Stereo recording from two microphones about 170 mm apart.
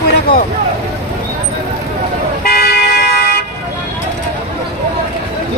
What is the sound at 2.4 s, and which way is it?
Vehicle, 65° left (ahead or behind).